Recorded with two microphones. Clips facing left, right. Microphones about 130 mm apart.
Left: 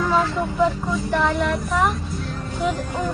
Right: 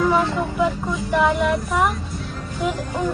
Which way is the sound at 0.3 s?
Centre (ahead or behind).